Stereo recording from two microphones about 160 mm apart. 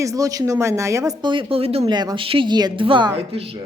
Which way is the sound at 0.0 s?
20° right (ahead or behind).